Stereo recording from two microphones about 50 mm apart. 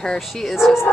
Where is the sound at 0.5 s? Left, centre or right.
Centre.